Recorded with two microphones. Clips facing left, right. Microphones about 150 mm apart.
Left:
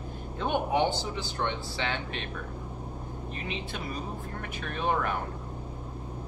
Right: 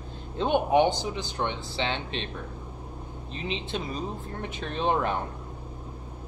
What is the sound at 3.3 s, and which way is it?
Speech, 25° right (ahead or behind).